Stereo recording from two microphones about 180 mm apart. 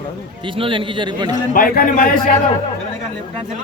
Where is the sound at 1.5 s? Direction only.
55° left (ahead or behind).